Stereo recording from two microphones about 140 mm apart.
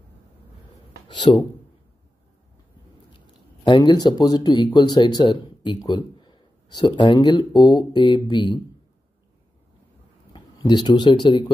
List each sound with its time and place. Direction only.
1.0 s speech: 35° left (ahead or behind)
3.6 s speech: 30° left (ahead or behind)
10.3 s speech: 35° left (ahead or behind)